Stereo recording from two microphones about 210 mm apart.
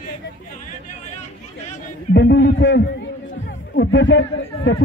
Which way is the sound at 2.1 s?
55° left (ahead or behind).